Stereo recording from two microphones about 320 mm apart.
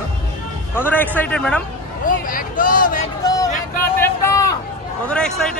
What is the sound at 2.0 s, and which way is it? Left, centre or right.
Speech, left.